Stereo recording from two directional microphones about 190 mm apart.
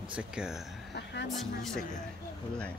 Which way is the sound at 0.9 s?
65° left (ahead or behind).